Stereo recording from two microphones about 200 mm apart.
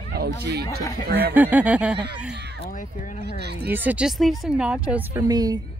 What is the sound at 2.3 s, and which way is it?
Speech, 55° right (ahead or behind).